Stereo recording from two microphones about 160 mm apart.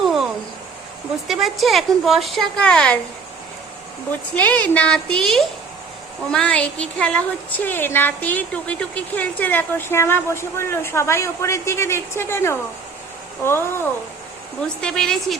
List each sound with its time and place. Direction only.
0.0 s a sound: centre (ahead or behind)
1.3 s a woman's voice: centre (ahead or behind)
4.4 s a woman's voice: 10° left (ahead or behind)
14.8 s a woman's voice: 5° left (ahead or behind)